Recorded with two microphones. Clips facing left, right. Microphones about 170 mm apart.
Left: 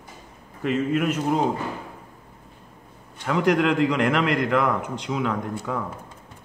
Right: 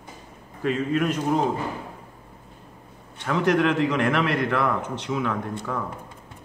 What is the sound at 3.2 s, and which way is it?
Speech, 10° left (ahead or behind).